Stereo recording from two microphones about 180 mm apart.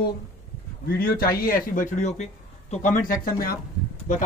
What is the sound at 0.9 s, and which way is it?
Speech, 55° left (ahead or behind).